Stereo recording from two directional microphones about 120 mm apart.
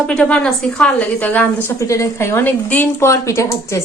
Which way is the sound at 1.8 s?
25° left (ahead or behind).